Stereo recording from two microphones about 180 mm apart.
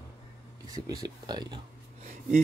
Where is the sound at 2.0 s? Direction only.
45° right (ahead or behind).